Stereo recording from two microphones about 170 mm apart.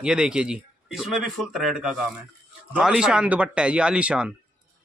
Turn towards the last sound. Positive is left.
turn(degrees=-5)  # may be behind; listen again after turning